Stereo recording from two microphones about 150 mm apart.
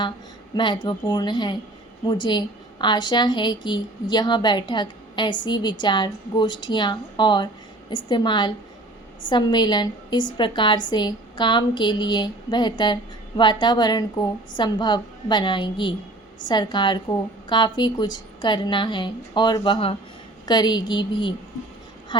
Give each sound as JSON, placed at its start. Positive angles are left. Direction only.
{"t": 0.5, "sound": "a woman's voice", "side_deg": 30}